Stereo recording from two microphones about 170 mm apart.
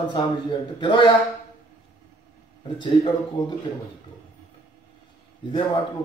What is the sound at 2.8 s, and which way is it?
Speech, 30° left (ahead or behind).